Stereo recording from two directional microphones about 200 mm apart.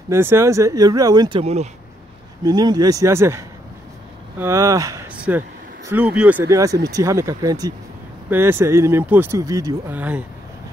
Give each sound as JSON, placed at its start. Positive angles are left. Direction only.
{"t": 0.1, "sound": "speech", "side_deg": -10}
{"t": 1.4, "sound": "speech", "side_deg": -30}
{"t": 2.4, "sound": "speech", "side_deg": -20}